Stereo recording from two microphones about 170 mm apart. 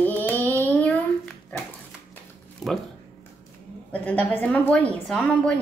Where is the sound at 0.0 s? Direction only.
10° left (ahead or behind).